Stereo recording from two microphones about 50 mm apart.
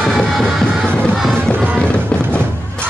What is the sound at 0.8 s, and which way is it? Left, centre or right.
Music, left.